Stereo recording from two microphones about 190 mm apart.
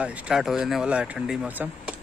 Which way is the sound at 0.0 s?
5° right (ahead or behind).